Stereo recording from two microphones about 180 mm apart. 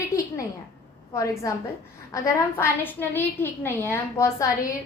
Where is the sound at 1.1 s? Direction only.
15° left (ahead or behind).